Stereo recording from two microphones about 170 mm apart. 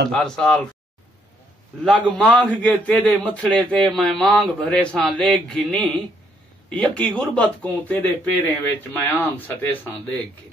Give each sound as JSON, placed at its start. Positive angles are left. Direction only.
{"t": 0.1, "sound": "speech", "side_deg": 0}
{"t": 2.0, "sound": "speech", "side_deg": 5}